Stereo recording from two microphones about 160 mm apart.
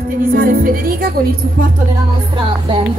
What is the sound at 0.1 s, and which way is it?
Speech, 65° right (ahead or behind).